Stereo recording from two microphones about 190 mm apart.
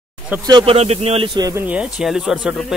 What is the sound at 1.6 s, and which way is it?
Speech, 5° right (ahead or behind).